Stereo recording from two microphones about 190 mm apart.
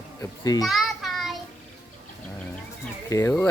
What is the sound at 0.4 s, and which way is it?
Speech, 20° left (ahead or behind).